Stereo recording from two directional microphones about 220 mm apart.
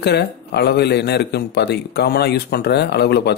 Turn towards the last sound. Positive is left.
turn(degrees=50)  # may be behind; listen again after turning